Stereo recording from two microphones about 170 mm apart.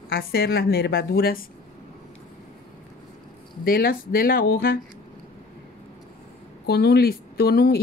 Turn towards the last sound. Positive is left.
turn(degrees=65)  # may be behind; listen again after turning